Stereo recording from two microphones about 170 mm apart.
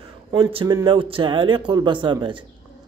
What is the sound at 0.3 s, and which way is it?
A man's voice, 30° right (ahead or behind).